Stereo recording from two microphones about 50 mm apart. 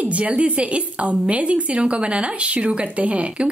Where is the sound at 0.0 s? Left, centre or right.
Right.